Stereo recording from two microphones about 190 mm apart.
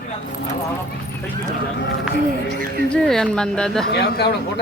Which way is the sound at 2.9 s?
5° left (ahead or behind).